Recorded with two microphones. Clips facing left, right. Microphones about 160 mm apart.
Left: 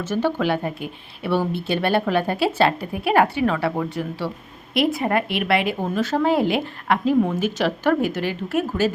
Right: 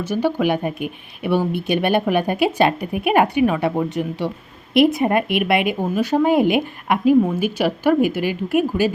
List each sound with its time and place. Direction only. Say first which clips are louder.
0.0 s a woman's voice: right 2 dB; 10° right (ahead or behind)